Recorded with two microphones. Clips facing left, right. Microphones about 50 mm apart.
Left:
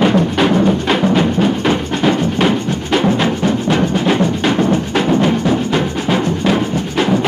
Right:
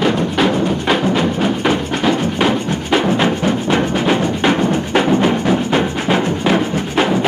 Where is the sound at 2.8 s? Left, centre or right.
Centre.